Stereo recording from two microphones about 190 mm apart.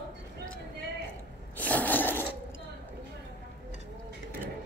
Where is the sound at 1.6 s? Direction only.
10° left (ahead or behind).